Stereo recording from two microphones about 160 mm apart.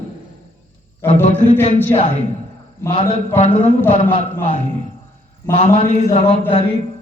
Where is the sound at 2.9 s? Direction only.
40° left (ahead or behind).